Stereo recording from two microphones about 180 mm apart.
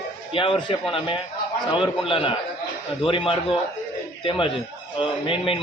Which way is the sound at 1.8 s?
30° left (ahead or behind).